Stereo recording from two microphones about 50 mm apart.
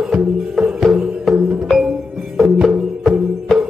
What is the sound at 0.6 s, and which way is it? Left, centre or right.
Music, centre.